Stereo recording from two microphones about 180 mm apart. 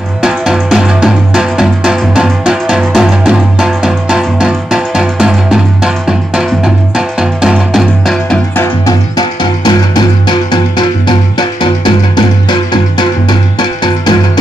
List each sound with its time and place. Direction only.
0.2 s music: 5° right (ahead or behind)
8.5 s music: 20° left (ahead or behind)